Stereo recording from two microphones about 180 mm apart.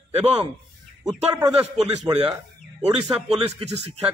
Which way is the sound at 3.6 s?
35° right (ahead or behind).